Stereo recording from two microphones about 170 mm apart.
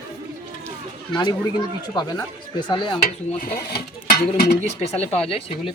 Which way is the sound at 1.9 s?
25° left (ahead or behind).